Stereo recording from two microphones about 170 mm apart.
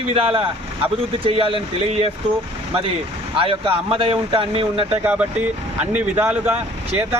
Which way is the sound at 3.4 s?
30° right (ahead or behind).